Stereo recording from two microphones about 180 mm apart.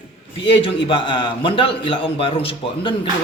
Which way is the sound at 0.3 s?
30° left (ahead or behind).